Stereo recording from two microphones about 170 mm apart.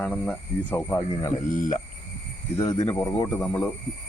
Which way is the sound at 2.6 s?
25° left (ahead or behind).